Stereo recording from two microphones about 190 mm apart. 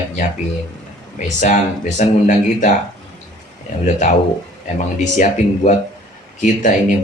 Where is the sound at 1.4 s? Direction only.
40° left (ahead or behind).